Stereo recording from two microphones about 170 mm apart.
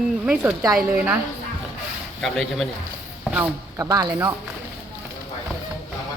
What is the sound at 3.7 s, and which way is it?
Speech, 20° right (ahead or behind).